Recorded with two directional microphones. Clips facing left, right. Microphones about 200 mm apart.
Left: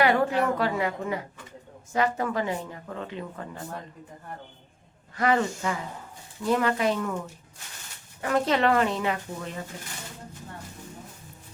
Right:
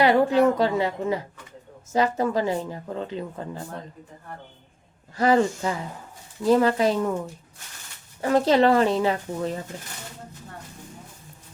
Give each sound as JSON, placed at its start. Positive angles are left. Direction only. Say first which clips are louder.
{"t": 0.0, "sound": "speech", "louder": "right 5 dB", "side_deg": -30}
{"t": 5.1, "sound": "speech", "louder": "right 5 dB", "side_deg": -30}
{"t": 8.2, "sound": "speech", "louder": "right 5 dB", "side_deg": -30}